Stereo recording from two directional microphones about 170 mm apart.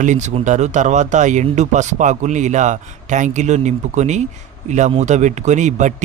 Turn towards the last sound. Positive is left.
turn(degrees=-45)  # may be behind; listen again after turning